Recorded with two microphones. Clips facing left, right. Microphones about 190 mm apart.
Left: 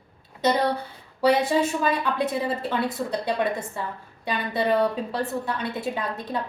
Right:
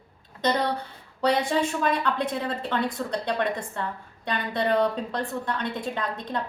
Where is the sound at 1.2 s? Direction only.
5° left (ahead or behind).